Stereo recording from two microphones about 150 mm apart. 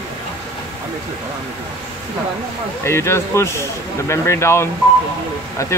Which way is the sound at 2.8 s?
15° left (ahead or behind).